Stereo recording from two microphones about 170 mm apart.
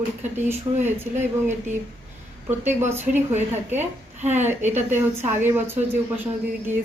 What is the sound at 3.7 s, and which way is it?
A woman's voice, 45° right (ahead or behind).